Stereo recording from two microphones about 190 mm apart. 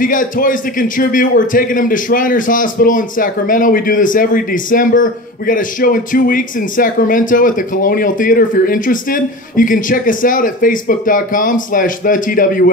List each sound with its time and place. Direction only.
0.0 s a man's voice: 45° left (ahead or behind)